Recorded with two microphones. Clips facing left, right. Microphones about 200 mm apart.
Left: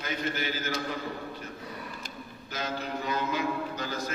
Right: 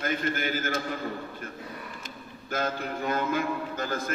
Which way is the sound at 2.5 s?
50° right (ahead or behind).